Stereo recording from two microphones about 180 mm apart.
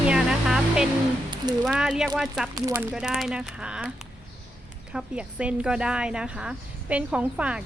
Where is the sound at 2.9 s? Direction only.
5° right (ahead or behind).